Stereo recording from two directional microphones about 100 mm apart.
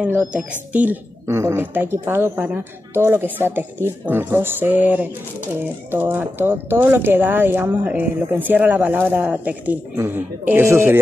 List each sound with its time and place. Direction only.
0.0 s a woman's voice: 15° right (ahead or behind)